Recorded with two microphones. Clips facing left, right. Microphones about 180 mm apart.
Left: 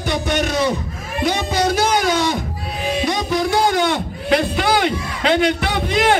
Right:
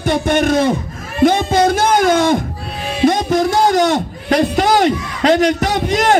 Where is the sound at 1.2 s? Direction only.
50° right (ahead or behind).